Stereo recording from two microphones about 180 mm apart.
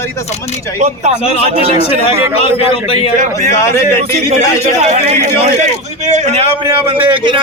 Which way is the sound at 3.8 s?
40° right (ahead or behind).